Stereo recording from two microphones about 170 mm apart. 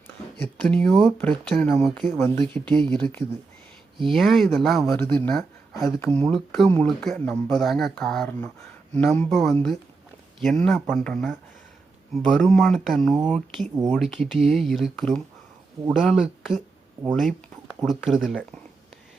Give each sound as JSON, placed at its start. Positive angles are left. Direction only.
{"t": 0.4, "sound": "speech", "side_deg": 5}
{"t": 2.1, "sound": "speech", "side_deg": 15}
{"t": 2.6, "sound": "speech", "side_deg": -25}
{"t": 2.9, "sound": "speech", "side_deg": 5}